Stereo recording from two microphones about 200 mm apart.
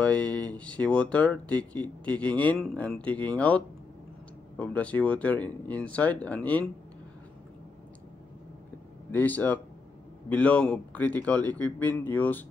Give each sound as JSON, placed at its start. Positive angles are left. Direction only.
{"t": 0.0, "sound": "a man's voice", "side_deg": 5}
{"t": 9.1, "sound": "a man's voice", "side_deg": 10}